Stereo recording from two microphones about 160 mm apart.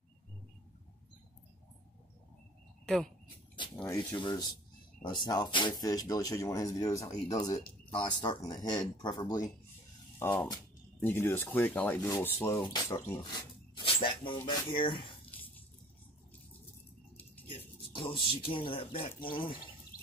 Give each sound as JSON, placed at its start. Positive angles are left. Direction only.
{"t": 3.7, "sound": "speech", "side_deg": 15}
{"t": 4.2, "sound": "speech", "side_deg": 25}
{"t": 10.1, "sound": "speech", "side_deg": 10}
{"t": 15.3, "sound": "a sound", "side_deg": 10}
{"t": 17.5, "sound": "speech", "side_deg": 35}